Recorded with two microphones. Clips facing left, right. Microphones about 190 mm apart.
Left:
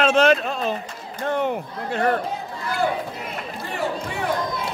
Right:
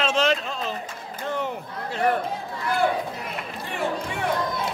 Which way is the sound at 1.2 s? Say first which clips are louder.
Left 6 dB; 60° left (ahead or behind).